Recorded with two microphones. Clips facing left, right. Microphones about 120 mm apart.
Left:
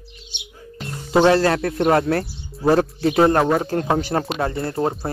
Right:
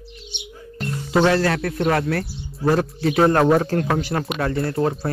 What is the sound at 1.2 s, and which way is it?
Speech, 30° left (ahead or behind).